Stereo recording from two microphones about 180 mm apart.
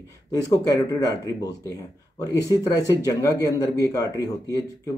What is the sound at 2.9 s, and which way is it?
Speech, 20° left (ahead or behind).